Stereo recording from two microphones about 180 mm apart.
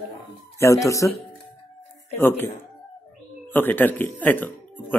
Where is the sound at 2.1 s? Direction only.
10° left (ahead or behind).